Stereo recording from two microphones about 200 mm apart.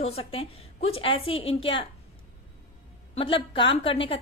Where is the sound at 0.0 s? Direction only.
30° left (ahead or behind).